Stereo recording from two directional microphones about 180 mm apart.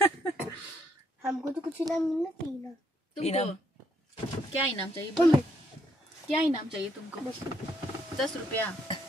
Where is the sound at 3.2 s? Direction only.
35° left (ahead or behind).